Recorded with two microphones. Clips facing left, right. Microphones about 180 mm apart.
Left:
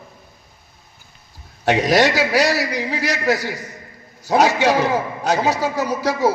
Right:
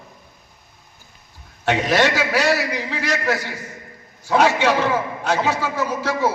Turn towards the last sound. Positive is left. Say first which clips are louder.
# left 2 dB
turn(degrees=40)  # may be behind; listen again after turning